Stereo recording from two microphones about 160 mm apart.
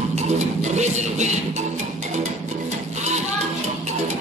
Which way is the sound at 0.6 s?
45° right (ahead or behind).